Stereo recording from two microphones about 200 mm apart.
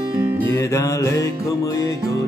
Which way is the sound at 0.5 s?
15° left (ahead or behind).